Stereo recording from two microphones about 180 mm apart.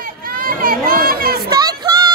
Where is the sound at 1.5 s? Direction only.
20° right (ahead or behind).